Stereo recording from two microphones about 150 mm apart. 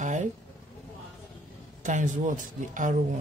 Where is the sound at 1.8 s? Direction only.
55° right (ahead or behind).